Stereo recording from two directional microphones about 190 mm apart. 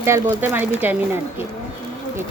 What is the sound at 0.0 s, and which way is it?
Speech, 10° right (ahead or behind).